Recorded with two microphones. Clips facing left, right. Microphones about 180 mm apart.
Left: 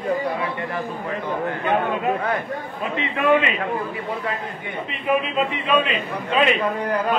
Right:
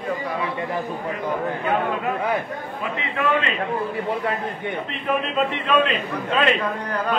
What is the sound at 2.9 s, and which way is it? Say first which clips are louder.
Speech: left 5 dB; 20° left (ahead or behind).